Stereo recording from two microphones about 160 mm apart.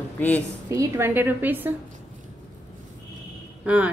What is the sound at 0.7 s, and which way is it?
A woman's voice, 15° right (ahead or behind).